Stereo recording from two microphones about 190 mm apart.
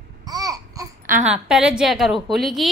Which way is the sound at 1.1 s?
5° right (ahead or behind).